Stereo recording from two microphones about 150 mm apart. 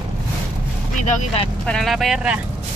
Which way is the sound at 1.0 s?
55° left (ahead or behind).